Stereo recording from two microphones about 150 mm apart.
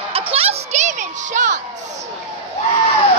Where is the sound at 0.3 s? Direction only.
40° right (ahead or behind).